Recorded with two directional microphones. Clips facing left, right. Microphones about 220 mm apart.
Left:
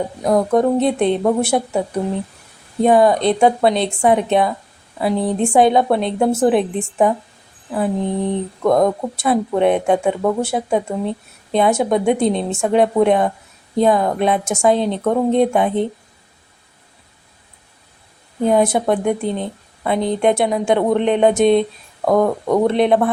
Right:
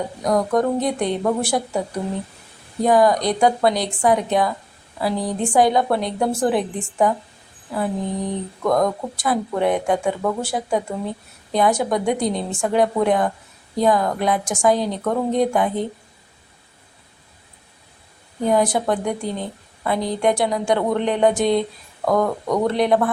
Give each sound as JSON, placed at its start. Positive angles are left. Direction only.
{"t": 0.2, "sound": "a woman's voice", "side_deg": 25}
{"t": 2.8, "sound": "a woman's voice", "side_deg": 25}
{"t": 8.6, "sound": "a woman's voice", "side_deg": 25}
{"t": 18.4, "sound": "a woman's voice", "side_deg": 25}